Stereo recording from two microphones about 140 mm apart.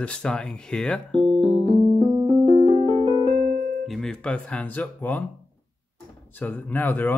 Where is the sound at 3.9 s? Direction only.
5° left (ahead or behind).